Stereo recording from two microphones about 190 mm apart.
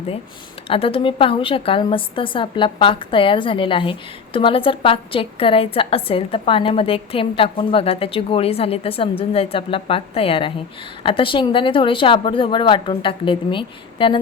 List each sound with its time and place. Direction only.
0.7 s a woman's voice: 30° left (ahead or behind)